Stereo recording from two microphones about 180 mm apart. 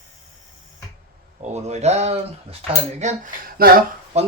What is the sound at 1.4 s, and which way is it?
Speech, 40° right (ahead or behind).